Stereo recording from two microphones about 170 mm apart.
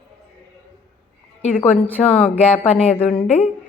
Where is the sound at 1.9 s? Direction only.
5° left (ahead or behind).